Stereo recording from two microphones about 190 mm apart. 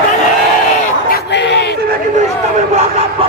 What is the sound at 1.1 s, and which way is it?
Crowd, 60° left (ahead or behind).